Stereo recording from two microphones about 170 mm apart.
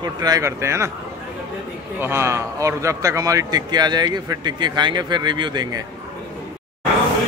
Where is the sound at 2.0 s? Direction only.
15° right (ahead or behind).